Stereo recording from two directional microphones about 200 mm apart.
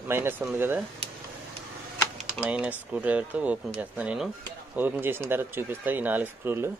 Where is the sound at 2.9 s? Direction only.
5° right (ahead or behind).